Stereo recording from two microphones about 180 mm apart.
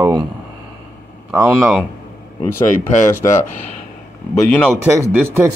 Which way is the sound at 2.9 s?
45° left (ahead or behind).